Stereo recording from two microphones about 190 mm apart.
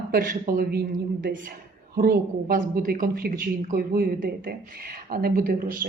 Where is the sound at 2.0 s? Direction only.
50° right (ahead or behind).